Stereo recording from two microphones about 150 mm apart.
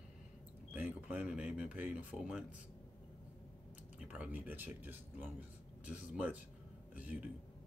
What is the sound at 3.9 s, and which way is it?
Speech, 10° right (ahead or behind).